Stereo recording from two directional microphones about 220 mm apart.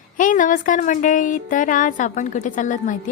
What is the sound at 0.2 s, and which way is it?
A woman's voice, 35° left (ahead or behind).